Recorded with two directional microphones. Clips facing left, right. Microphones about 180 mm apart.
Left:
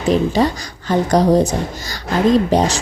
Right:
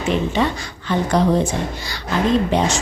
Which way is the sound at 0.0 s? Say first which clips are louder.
Left 4 dB; 40° left (ahead or behind).